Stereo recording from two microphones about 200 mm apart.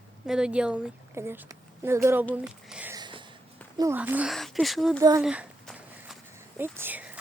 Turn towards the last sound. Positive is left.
turn(degrees=-5)  # may be behind; listen again after turning